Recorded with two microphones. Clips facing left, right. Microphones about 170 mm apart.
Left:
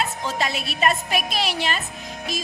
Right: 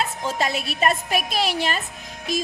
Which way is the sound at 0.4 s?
45° right (ahead or behind).